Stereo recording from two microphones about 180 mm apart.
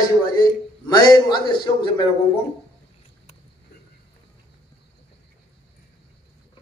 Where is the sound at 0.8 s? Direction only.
25° left (ahead or behind).